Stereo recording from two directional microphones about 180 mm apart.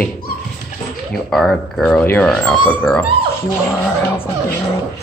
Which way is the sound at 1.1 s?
5° left (ahead or behind).